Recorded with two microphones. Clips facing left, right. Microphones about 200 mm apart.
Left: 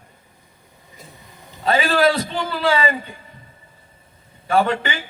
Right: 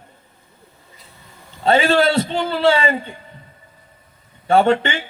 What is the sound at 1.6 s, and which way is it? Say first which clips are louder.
A man's voice: right 2 dB; 25° right (ahead or behind).